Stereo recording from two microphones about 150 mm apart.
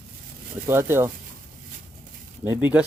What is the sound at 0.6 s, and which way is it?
Speech, 15° right (ahead or behind).